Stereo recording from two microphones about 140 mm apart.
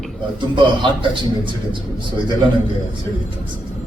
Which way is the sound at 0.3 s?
35° right (ahead or behind).